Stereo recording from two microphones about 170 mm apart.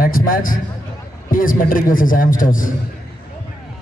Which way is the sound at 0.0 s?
55° left (ahead or behind).